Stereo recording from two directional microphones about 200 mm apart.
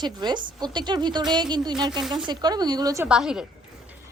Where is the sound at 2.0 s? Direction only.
Centre (ahead or behind).